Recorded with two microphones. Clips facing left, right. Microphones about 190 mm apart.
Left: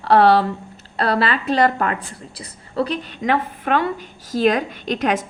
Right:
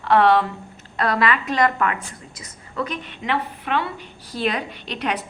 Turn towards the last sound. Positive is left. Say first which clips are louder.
# left 6 dB
turn(degrees=45)  # may be behind; listen again after turning